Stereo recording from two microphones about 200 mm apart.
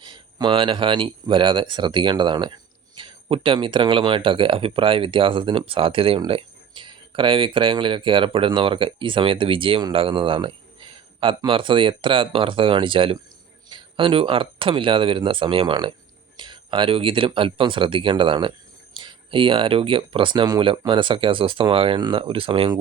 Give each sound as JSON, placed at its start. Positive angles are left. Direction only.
{"t": 0.0, "sound": "speech", "side_deg": -25}